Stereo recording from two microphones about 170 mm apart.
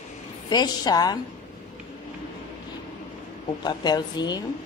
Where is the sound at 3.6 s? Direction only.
25° left (ahead or behind).